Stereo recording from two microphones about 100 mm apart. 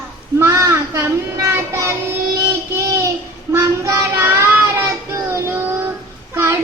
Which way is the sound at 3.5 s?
30° right (ahead or behind).